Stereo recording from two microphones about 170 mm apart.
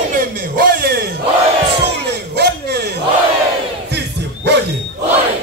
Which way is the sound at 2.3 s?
70° right (ahead or behind).